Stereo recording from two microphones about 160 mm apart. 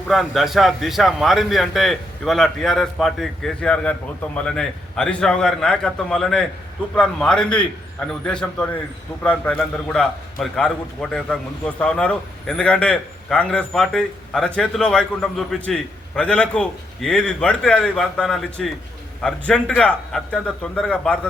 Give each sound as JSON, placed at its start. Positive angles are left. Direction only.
{"t": 0.1, "sound": "a man's voice", "side_deg": 0}